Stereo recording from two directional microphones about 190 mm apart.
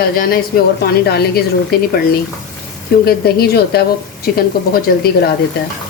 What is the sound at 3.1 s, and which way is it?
A woman's voice, 55° left (ahead or behind).